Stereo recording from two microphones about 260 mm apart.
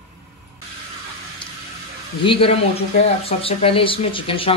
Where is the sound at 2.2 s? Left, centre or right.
Left.